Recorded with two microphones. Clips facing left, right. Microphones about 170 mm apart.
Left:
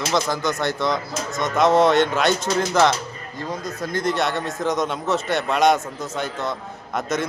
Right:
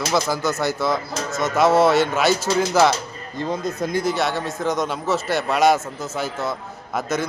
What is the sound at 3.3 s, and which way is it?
Speech, 25° right (ahead or behind).